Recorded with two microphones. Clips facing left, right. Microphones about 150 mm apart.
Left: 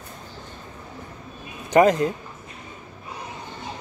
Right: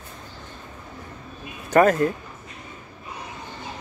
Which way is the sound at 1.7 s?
20° left (ahead or behind).